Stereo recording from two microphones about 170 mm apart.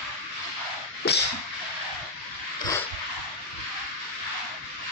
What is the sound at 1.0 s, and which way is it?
Whip, 70° left (ahead or behind).